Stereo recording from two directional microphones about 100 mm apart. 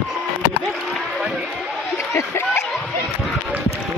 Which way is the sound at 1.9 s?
30° left (ahead or behind).